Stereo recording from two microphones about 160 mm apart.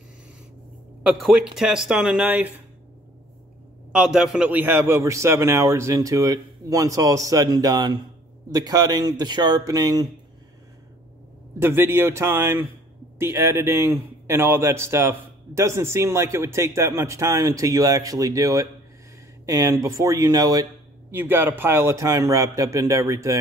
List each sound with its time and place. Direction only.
1.0 s speech: 5° right (ahead or behind)
3.9 s a man's voice: 5° right (ahead or behind); by 10.0 s 25° right (ahead or behind)
11.6 s a man's voice: 15° right (ahead or behind)